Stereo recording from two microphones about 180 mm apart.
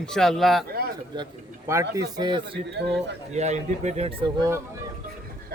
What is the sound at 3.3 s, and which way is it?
Speech, 40° right (ahead or behind).